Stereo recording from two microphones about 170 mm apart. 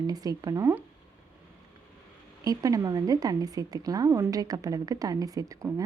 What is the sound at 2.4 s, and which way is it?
A woman's voice, 20° right (ahead or behind).